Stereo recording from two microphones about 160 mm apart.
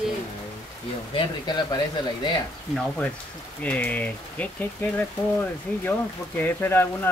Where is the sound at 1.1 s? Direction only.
30° left (ahead or behind).